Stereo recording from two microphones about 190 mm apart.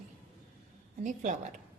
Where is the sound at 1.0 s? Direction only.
40° right (ahead or behind).